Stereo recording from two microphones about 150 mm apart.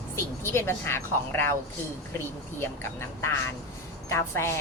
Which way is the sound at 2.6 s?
15° left (ahead or behind).